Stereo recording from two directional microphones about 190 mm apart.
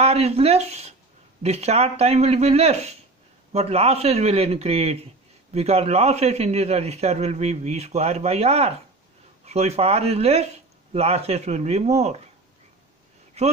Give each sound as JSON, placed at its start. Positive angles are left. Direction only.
{"t": 0.0, "sound": "a man's voice", "side_deg": -35}
{"t": 13.4, "sound": "a man's voice", "side_deg": -35}